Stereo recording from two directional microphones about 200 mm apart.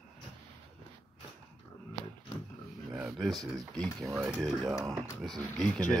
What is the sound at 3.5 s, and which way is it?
Speech, centre (ahead or behind).